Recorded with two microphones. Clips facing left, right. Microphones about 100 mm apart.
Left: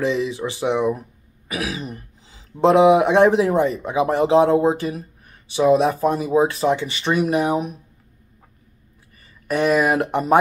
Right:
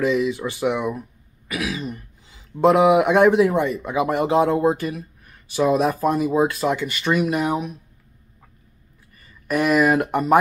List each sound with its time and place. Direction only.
0.0 s speech: 30° left (ahead or behind)
9.5 s speech: 25° left (ahead or behind)